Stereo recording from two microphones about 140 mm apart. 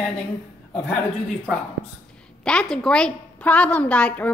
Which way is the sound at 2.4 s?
5° left (ahead or behind).